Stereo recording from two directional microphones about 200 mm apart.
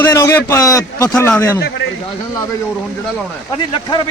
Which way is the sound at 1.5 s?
50° left (ahead or behind).